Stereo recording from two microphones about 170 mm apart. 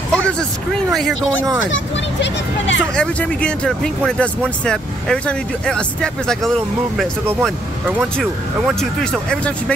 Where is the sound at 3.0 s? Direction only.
5° left (ahead or behind).